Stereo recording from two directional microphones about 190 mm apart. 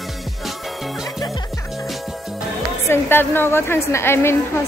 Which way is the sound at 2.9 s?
10° left (ahead or behind).